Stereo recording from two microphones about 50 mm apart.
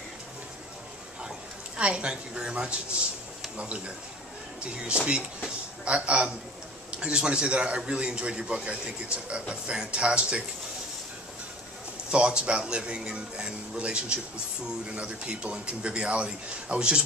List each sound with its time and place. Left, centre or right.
1.8 s a woman's voice: right
5.9 s a man's voice: right
12.1 s a man's voice: right